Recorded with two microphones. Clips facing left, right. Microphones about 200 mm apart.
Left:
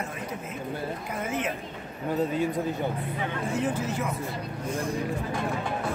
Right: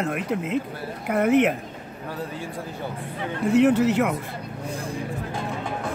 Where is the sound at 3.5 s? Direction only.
70° right (ahead or behind).